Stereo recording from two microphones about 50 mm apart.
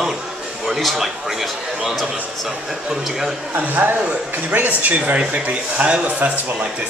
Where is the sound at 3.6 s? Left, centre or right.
Right.